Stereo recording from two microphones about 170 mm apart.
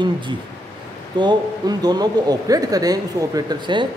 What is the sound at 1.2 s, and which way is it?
Speech, 25° right (ahead or behind).